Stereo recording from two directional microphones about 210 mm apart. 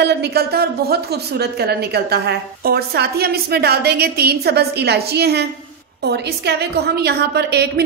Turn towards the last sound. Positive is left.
turn(degrees=-50)  # may be behind; listen again after turning